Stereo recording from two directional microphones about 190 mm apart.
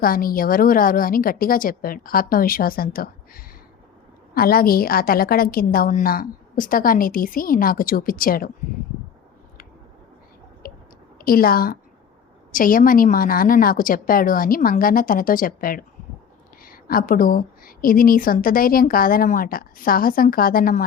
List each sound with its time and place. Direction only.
0.0 s a woman's voice: 50° left (ahead or behind)
10.6 s a sound: 50° left (ahead or behind)
11.2 s a woman's voice: 50° left (ahead or behind)